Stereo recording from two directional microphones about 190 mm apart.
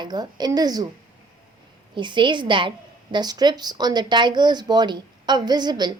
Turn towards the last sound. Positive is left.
turn(degrees=-20)  # may be behind; listen again after turning